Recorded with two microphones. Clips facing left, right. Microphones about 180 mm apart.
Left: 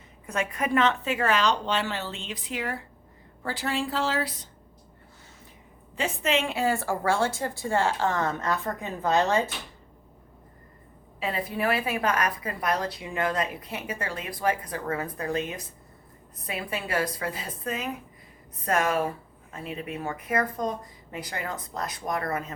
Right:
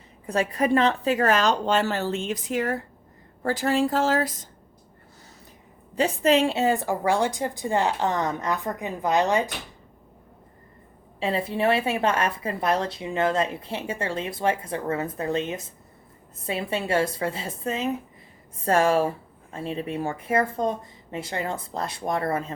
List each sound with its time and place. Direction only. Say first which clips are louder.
0.3 s a woman's voice: right 5 dB; 35° right (ahead or behind)
5.9 s a woman's voice: right 6 dB; 40° right (ahead or behind); by 9.5 s 15° right (ahead or behind)
11.2 s a woman's voice: right 4 dB; 25° right (ahead or behind)